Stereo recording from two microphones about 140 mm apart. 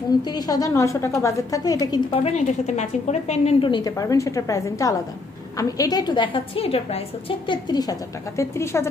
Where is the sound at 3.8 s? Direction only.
25° left (ahead or behind).